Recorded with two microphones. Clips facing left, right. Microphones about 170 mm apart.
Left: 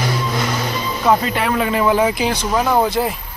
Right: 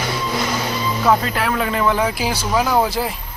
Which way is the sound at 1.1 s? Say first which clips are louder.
Left 2 dB; centre (ahead or behind).